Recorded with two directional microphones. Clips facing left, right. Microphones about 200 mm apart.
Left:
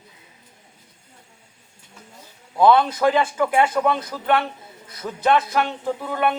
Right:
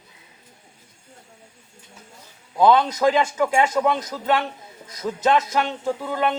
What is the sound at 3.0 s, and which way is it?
Speech, 15° right (ahead or behind).